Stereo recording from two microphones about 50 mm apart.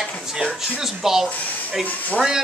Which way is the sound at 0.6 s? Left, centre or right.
Centre.